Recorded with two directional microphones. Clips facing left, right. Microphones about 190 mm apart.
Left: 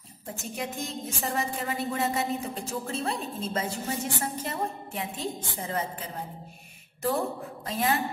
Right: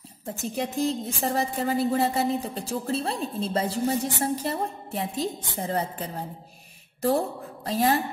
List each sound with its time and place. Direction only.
0.4 s a woman's voice: 35° right (ahead or behind)